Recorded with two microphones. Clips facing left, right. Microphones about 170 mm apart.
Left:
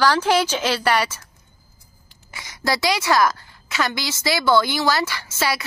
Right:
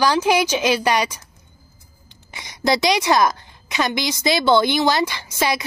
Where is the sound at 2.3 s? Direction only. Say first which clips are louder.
Right 4 dB; 20° right (ahead or behind).